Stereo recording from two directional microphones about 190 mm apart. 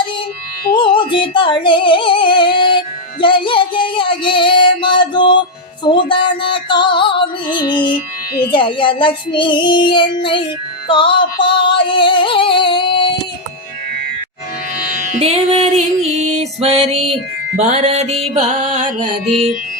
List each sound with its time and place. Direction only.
0.7 s music: 25° left (ahead or behind)
8.5 s child singing: 25° left (ahead or behind)
10.8 s music: 25° left (ahead or behind)
15.2 s music: 30° right (ahead or behind)